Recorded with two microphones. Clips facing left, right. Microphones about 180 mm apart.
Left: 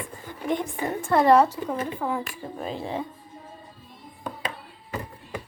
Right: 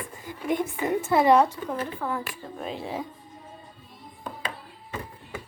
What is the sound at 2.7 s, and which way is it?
Speech, centre (ahead or behind).